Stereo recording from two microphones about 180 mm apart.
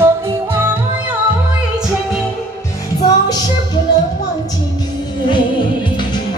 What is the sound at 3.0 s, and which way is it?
Music, 20° left (ahead or behind).